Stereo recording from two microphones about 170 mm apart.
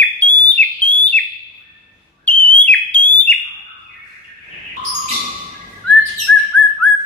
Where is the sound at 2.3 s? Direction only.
5° left (ahead or behind).